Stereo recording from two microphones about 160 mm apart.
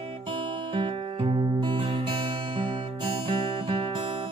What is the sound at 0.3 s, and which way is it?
Music, 30° right (ahead or behind).